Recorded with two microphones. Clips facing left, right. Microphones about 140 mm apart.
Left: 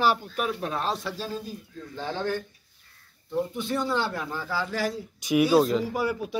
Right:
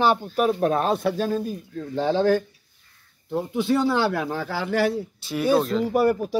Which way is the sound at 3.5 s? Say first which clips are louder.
Right 11 dB; 70° right (ahead or behind).